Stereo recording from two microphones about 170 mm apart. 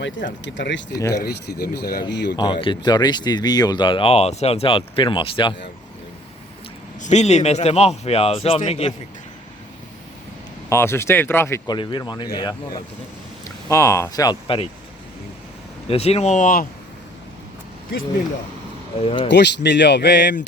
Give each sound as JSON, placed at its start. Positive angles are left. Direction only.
{"t": 0.4, "sound": "speech", "side_deg": 90}
{"t": 0.9, "sound": "speech", "side_deg": 20}
{"t": 1.2, "sound": "speech", "side_deg": 70}
{"t": 2.3, "sound": "speech", "side_deg": 25}
{"t": 7.0, "sound": "a man's voice", "side_deg": 40}
{"t": 10.7, "sound": "speech", "side_deg": 15}
{"t": 15.9, "sound": "a man's voice", "side_deg": 35}
{"t": 18.9, "sound": "a man's voice", "side_deg": 35}
{"t": 19.3, "sound": "speech", "side_deg": 90}